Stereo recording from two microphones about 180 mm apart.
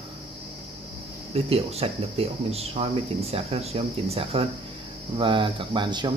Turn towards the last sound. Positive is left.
turn(degrees=-25)  # may be behind; listen again after turning